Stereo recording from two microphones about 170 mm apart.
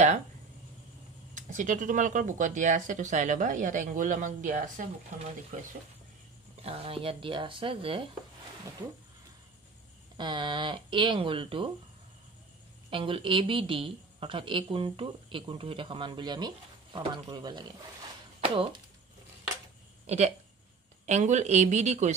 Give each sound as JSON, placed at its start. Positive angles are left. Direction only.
{"t": 1.3, "sound": "speech", "side_deg": -50}
{"t": 6.6, "sound": "a woman's voice", "side_deg": -35}
{"t": 10.1, "sound": "a woman's voice", "side_deg": -30}
{"t": 12.9, "sound": "a woman's voice", "side_deg": -30}
{"t": 20.1, "sound": "speech", "side_deg": -40}